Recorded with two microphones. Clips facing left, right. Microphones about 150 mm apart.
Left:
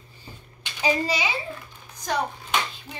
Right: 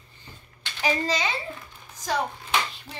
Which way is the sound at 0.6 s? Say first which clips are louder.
Left 2 dB; 15° left (ahead or behind).